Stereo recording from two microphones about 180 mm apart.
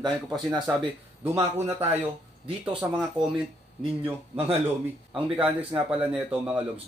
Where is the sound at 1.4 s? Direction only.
35° right (ahead or behind).